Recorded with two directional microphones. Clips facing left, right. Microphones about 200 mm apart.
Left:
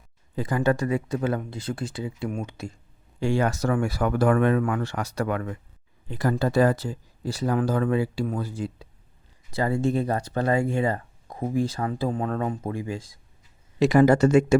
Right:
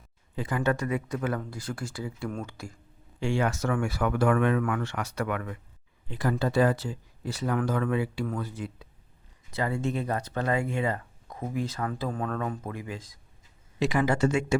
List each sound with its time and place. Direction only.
0.3 s speech: 35° left (ahead or behind); by 2.7 s 20° left (ahead or behind)
3.2 s speech: 40° left (ahead or behind)
13.7 s speech: 40° left (ahead or behind)